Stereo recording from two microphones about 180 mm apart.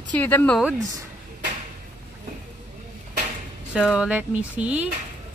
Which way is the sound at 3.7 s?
5° right (ahead or behind).